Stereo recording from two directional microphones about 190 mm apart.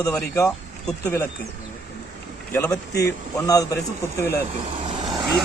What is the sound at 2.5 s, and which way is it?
A man's voice, 10° left (ahead or behind).